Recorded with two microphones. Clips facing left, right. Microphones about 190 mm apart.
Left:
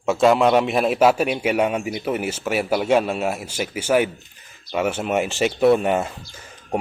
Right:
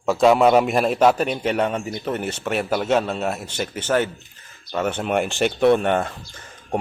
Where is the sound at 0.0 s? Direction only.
Centre (ahead or behind).